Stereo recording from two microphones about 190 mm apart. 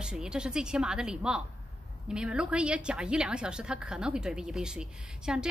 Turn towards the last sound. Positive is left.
turn(degrees=-5)  # may be behind; listen again after turning